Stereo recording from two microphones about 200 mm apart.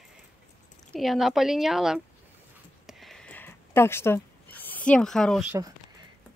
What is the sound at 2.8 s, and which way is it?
Zipper, centre (ahead or behind).